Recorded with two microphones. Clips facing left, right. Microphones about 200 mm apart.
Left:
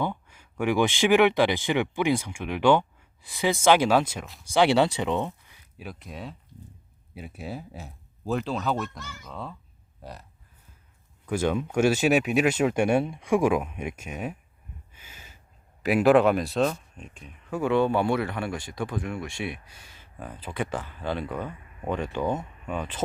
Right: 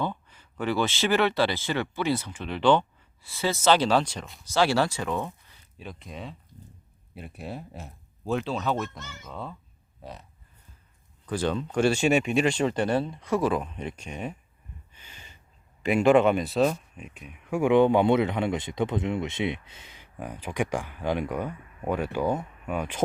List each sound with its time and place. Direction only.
0.0 s speech: 10° left (ahead or behind)
4.5 s speech: 20° left (ahead or behind)
5.8 s speech: 5° left (ahead or behind)
11.3 s speech: 10° left (ahead or behind)
14.9 s gasp: 5° left (ahead or behind)
15.8 s speech: 5° left (ahead or behind)